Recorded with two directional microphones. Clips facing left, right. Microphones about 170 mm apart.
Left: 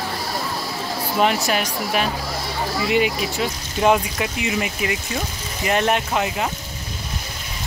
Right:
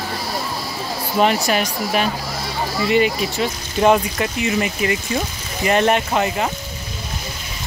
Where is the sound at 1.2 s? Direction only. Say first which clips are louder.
Right 3 dB; centre (ahead or behind).